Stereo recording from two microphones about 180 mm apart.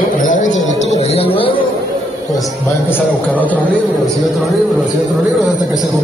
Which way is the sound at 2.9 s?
10° left (ahead or behind).